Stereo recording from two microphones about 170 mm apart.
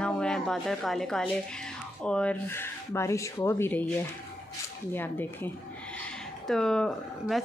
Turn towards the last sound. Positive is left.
turn(degrees=0)  # may be behind; listen again after turning